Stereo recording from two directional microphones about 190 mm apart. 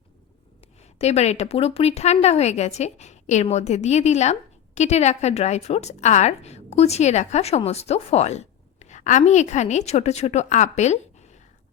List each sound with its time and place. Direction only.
0.9 s a woman's voice: 35° left (ahead or behind)